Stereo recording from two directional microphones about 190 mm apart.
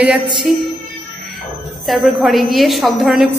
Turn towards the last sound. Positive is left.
turn(degrees=0)  # may be behind; listen again after turning